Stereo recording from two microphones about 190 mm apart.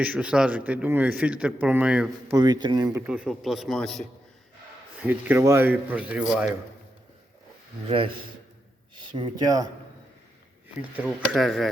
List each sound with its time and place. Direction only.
0.0 s a man's voice: 5° right (ahead or behind)
2.3 s speech: 20° right (ahead or behind)
3.1 s speech: 5° right (ahead or behind)
4.9 s a man's voice: 10° right (ahead or behind)
7.9 s speech: 30° right (ahead or behind)
10.9 s speech: 5° right (ahead or behind)